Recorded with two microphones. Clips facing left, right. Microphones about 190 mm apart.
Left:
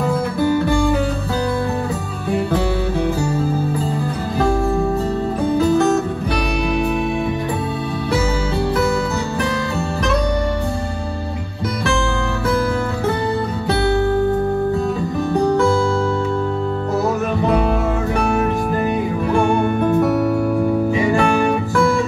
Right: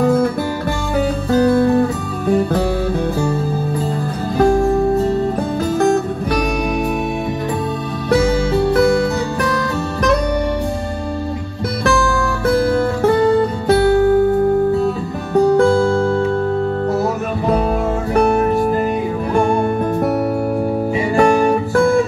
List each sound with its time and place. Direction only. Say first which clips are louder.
18.1 s music: right 7 dB; 35° right (ahead or behind)
21.2 s music: right 4 dB; 35° right (ahead or behind)